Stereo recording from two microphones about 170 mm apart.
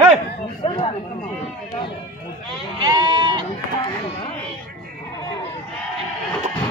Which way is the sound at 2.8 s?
25° right (ahead or behind).